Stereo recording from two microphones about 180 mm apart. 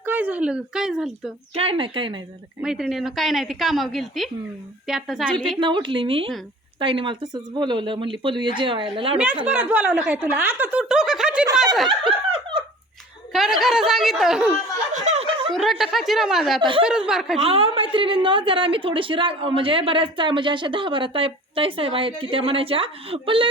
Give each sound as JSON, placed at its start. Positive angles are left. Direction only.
{"t": 0.0, "sound": "a woman's voice", "side_deg": -10}
{"t": 1.5, "sound": "a woman's voice", "side_deg": -30}
{"t": 2.6, "sound": "a woman's voice", "side_deg": -5}
{"t": 5.5, "sound": "a woman's voice", "side_deg": -25}
{"t": 9.4, "sound": "speech", "side_deg": -10}
{"t": 11.9, "sound": "a sound", "side_deg": -25}
{"t": 13.3, "sound": "a woman's voice", "side_deg": 0}
{"t": 14.9, "sound": "snicker", "side_deg": -40}
{"t": 15.4, "sound": "a woman's voice", "side_deg": 0}
{"t": 16.6, "sound": "a woman's voice", "side_deg": -25}
{"t": 17.1, "sound": "a woman's voice", "side_deg": 0}
{"t": 17.4, "sound": "a woman's voice", "side_deg": -30}